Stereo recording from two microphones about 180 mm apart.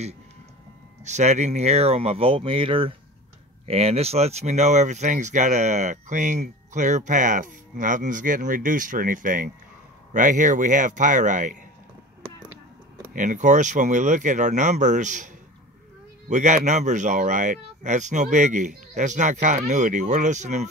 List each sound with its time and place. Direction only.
1.0 s speech: 40° right (ahead or behind)
13.1 s speech: 45° right (ahead or behind)